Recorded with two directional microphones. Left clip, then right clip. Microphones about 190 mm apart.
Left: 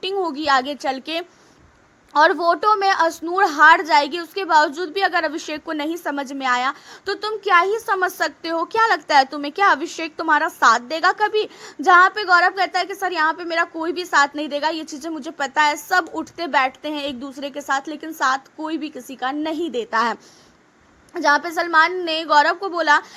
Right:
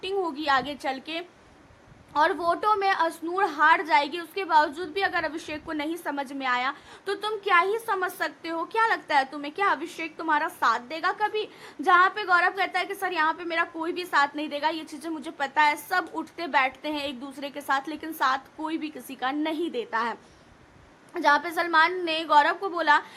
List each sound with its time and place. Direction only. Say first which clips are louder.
0.0 s a woman's voice: left 6 dB; 30° left (ahead or behind)